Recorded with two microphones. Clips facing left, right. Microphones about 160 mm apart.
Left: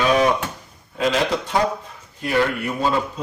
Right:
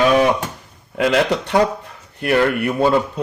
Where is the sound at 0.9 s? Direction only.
65° right (ahead or behind).